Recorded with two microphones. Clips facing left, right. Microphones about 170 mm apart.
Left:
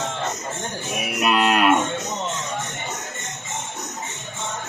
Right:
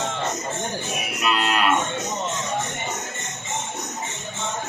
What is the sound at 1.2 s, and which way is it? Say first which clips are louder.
Cattle: left 4 dB; 55° left (ahead or behind).